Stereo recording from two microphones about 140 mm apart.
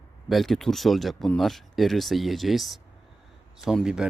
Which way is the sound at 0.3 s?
Centre (ahead or behind).